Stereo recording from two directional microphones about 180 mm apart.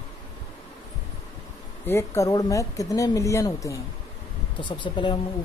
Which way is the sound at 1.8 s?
15° left (ahead or behind).